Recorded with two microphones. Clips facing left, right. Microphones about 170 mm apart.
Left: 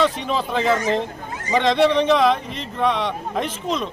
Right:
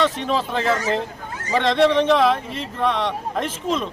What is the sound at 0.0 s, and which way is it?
A man's voice, centre (ahead or behind).